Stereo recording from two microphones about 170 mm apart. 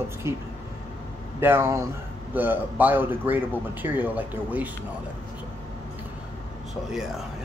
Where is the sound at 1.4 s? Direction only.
15° right (ahead or behind).